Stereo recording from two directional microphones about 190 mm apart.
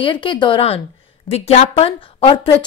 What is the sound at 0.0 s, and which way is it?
A woman's voice, 25° left (ahead or behind).